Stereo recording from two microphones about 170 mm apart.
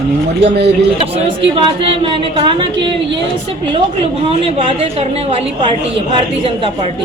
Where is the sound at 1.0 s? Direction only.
35° right (ahead or behind).